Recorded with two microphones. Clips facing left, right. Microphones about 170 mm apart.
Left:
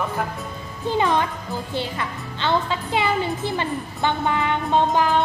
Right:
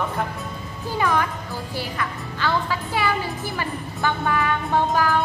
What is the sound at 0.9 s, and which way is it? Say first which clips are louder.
Speech: left 2 dB; 25° left (ahead or behind).